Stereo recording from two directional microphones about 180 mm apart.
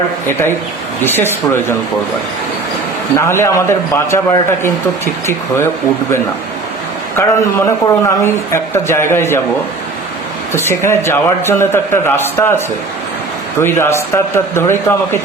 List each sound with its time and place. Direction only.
1.0 s a man's voice: 10° left (ahead or behind)
3.2 s a man's voice: 15° left (ahead or behind)
7.2 s a man's voice: 15° left (ahead or behind)
10.5 s a man's voice: 15° left (ahead or behind)